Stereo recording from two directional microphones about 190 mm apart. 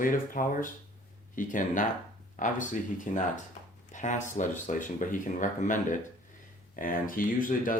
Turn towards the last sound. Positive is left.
turn(degrees=45)  # may be behind; listen again after turning